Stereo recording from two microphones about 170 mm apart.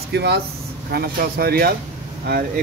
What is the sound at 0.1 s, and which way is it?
Speech, 80° right.